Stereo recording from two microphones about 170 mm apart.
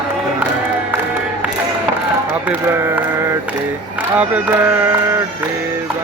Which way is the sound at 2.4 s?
15° right (ahead or behind).